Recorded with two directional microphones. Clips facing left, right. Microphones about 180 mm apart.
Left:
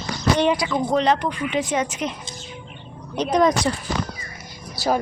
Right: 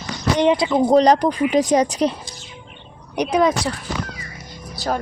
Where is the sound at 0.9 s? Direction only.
35° right (ahead or behind).